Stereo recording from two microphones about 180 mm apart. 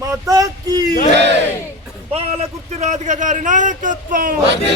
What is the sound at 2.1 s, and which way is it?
A man's voice, 35° right (ahead or behind).